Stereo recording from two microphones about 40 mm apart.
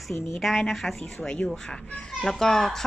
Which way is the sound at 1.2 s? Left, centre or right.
Left.